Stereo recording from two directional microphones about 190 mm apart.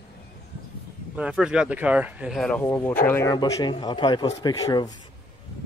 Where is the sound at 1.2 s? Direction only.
5° right (ahead or behind); by 3.3 s 10° left (ahead or behind).